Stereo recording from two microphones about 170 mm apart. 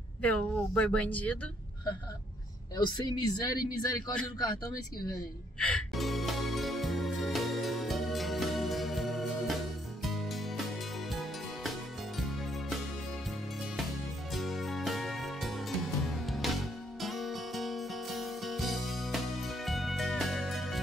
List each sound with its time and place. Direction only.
0.2 s speech: 5° left (ahead or behind)
2.7 s speech: 25° left (ahead or behind)
5.7 s music: centre (ahead or behind)
14.3 s music: centre (ahead or behind)